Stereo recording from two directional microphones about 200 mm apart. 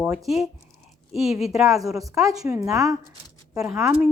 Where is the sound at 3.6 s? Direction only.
5° right (ahead or behind).